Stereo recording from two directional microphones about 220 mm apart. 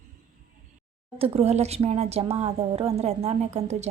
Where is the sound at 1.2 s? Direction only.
25° right (ahead or behind).